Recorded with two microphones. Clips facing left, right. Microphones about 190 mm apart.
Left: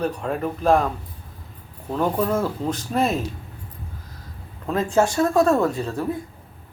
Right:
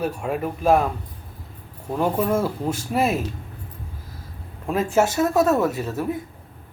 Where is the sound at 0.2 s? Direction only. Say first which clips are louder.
Even; 10° right (ahead or behind).